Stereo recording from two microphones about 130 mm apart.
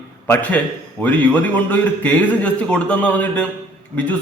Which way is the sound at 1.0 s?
10° left (ahead or behind).